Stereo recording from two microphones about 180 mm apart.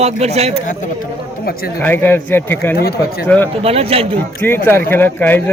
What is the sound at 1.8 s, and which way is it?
Speech, 10° left (ahead or behind).